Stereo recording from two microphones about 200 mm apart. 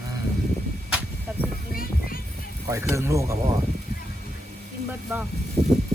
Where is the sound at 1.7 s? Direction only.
45° left (ahead or behind).